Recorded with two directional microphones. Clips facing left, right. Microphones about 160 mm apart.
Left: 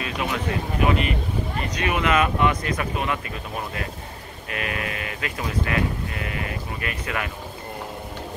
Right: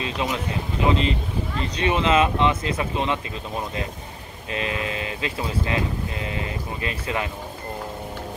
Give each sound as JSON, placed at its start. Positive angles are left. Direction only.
{"t": 0.0, "sound": "speech", "side_deg": -25}
{"t": 4.5, "sound": "speech", "side_deg": -25}